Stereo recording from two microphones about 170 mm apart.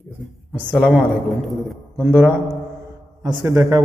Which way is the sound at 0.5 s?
5° right (ahead or behind).